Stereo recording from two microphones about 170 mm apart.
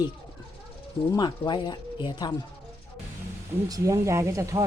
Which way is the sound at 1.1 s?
25° left (ahead or behind).